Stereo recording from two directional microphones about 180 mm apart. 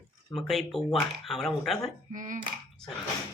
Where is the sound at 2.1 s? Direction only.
45° right (ahead or behind).